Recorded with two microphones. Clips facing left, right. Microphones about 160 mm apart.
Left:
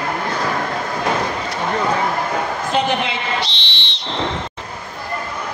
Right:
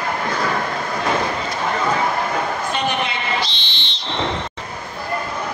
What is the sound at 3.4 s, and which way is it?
Whistle, 70° left (ahead or behind).